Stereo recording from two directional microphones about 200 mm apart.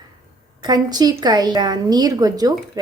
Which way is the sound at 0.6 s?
20° right (ahead or behind).